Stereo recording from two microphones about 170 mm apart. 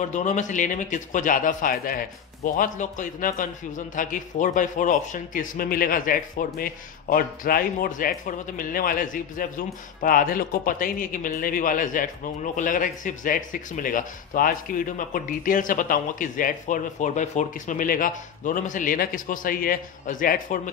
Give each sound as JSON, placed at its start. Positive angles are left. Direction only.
{"t": 0.0, "sound": "a man's voice", "side_deg": 45}